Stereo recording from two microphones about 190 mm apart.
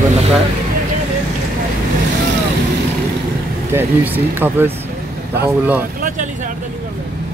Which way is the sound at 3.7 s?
10° right (ahead or behind).